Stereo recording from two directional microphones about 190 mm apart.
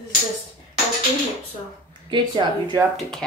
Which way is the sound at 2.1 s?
25° right (ahead or behind).